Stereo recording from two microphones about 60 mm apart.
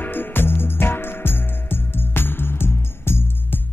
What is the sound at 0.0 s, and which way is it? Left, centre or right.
Music, left.